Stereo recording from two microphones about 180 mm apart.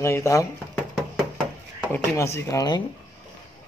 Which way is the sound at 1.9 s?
15° left (ahead or behind).